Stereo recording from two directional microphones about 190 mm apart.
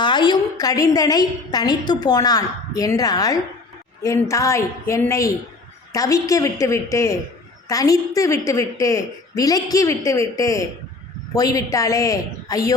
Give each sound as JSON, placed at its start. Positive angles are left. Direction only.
{"t": 0.0, "sound": "a woman's voice", "side_deg": 25}